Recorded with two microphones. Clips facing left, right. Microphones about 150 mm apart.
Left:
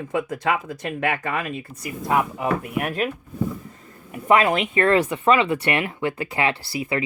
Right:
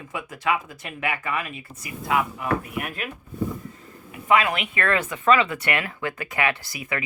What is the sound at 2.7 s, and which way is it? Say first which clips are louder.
Speech: left 7 dB; 40° left (ahead or behind).